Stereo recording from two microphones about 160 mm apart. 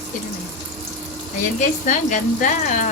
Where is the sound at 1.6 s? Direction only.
50° left (ahead or behind).